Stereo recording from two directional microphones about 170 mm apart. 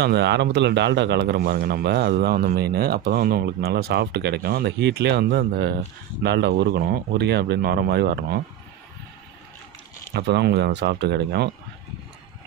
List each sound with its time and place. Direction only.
0.0 s speech: 75° right (ahead or behind)
10.1 s speech: 75° right (ahead or behind)